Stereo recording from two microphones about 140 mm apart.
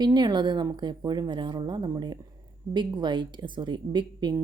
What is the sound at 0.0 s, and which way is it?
Speech, 30° right (ahead or behind).